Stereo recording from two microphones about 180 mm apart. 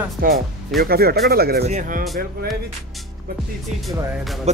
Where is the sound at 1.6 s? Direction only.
45° right (ahead or behind).